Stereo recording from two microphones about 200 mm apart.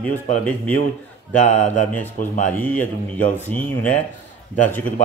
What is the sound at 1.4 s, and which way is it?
Speech, 35° left (ahead or behind).